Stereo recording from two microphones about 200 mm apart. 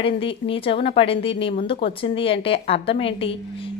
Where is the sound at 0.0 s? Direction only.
25° left (ahead or behind).